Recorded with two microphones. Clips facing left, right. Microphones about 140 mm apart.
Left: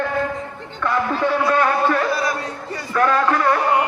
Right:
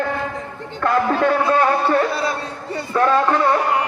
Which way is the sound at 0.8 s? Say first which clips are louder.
Right 3 dB; 55° right (ahead or behind).